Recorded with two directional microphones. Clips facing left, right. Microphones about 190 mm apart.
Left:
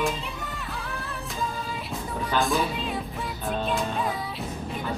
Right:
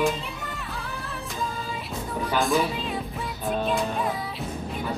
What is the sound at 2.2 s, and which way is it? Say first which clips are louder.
Music: right 2 dB; centre (ahead or behind).